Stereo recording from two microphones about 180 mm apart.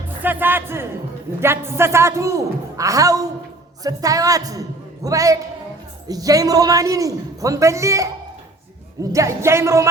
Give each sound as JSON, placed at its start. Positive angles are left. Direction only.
{"t": 0.2, "sound": "music", "side_deg": -10}
{"t": 1.4, "sound": "a man's voice", "side_deg": -15}
{"t": 9.1, "sound": "a man's voice", "side_deg": -15}